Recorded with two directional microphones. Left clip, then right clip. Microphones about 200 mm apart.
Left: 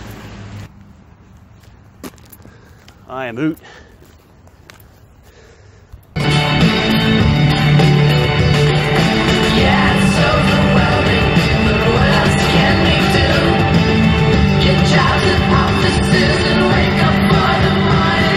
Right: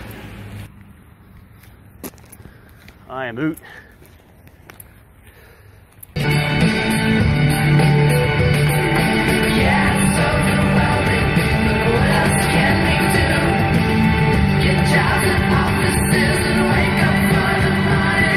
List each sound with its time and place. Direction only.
3.1 s speech: 5° left (ahead or behind)
6.5 s music: 40° right (ahead or behind)
11.4 s music: 5° left (ahead or behind)
11.8 s music: 45° right (ahead or behind)